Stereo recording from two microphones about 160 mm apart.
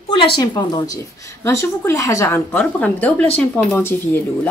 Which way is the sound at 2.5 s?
10° left (ahead or behind).